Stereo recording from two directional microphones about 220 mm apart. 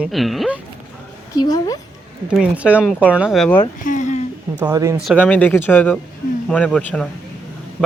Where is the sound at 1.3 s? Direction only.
15° left (ahead or behind).